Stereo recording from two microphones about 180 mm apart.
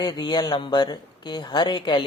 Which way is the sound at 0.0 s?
25° left (ahead or behind).